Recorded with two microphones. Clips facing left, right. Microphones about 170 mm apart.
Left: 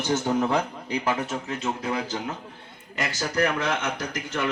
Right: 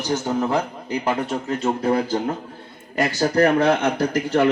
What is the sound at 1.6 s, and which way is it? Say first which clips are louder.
Speech: right 9 dB; 45° right (ahead or behind).